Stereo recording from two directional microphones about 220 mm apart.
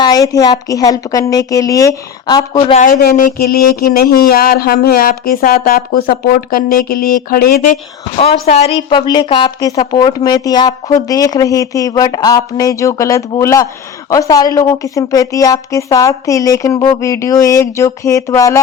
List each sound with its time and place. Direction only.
0.0 s a woman's voice: 15° left (ahead or behind)
2.7 s speech: 40° left (ahead or behind)
8.2 s a woman's voice: 30° left (ahead or behind)